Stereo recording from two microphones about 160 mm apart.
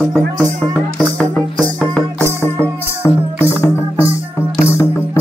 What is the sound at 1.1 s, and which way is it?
Music, 10° left (ahead or behind).